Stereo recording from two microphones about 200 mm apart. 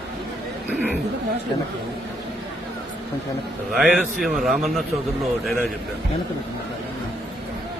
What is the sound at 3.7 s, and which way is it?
A man's voice, centre (ahead or behind).